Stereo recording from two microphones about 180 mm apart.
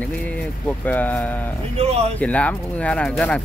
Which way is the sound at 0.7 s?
10° left (ahead or behind).